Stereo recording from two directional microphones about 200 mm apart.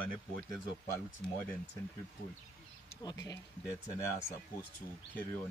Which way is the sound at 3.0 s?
15° left (ahead or behind).